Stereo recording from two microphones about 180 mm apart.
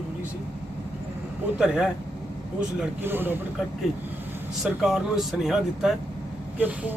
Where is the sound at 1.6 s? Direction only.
5° right (ahead or behind).